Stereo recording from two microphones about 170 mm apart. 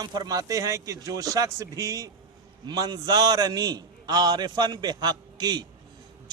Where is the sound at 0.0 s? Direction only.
25° right (ahead or behind).